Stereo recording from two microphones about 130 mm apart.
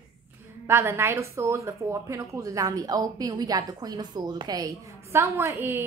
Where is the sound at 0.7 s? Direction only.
20° right (ahead or behind).